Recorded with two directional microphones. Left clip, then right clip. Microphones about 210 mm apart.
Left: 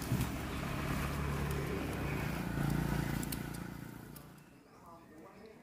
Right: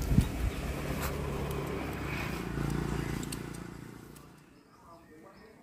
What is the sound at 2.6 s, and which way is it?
Vehicle, 40° left (ahead or behind).